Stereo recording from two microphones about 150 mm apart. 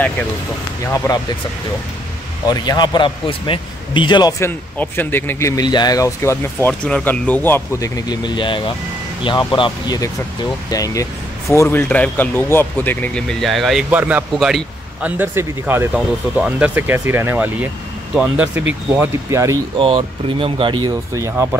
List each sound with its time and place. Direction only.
0.8 s a man's voice: 20° left (ahead or behind)
2.4 s a man's voice: 25° left (ahead or behind)
5.6 s a man's voice: 25° left (ahead or behind)
6.7 s a man's voice: 5° left (ahead or behind)
18.9 s speech: 20° right (ahead or behind)
19.8 s speech: 35° right (ahead or behind)
21.1 s speech: 20° right (ahead or behind)